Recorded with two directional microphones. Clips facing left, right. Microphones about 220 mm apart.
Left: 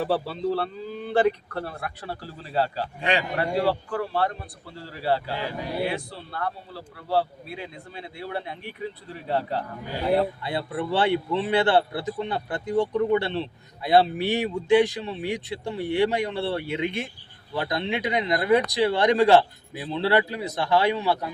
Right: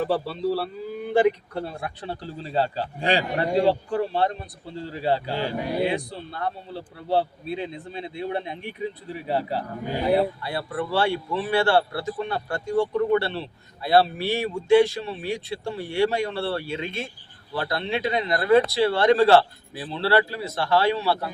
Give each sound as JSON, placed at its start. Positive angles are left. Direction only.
{"t": 0.0, "sound": "a man's voice", "side_deg": 0}
{"t": 5.3, "sound": "speech", "side_deg": -30}
{"t": 5.8, "sound": "a man's voice", "side_deg": -15}
{"t": 10.4, "sound": "speech", "side_deg": 20}